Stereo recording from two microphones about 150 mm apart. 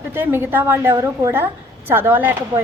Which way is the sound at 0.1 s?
15° right (ahead or behind).